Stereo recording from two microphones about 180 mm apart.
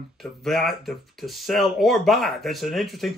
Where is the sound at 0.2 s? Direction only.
Centre (ahead or behind).